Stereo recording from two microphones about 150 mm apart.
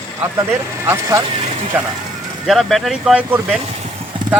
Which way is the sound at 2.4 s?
Centre (ahead or behind).